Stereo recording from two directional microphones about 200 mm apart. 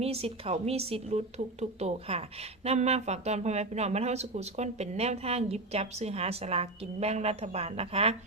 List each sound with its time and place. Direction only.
0.0 s speech: 30° right (ahead or behind)